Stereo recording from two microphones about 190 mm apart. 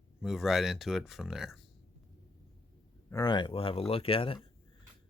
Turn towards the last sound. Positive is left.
turn(degrees=30)  # may be behind; listen again after turning